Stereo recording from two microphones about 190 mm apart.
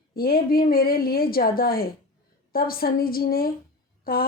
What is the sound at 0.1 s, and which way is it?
A woman's voice, 50° left (ahead or behind).